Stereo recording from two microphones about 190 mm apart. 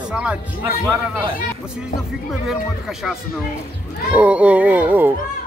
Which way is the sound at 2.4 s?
Centre (ahead or behind).